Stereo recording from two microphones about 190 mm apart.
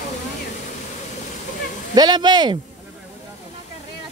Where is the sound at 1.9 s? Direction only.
20° right (ahead or behind).